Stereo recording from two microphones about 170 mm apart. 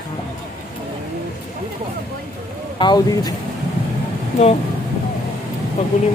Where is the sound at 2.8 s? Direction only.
25° left (ahead or behind).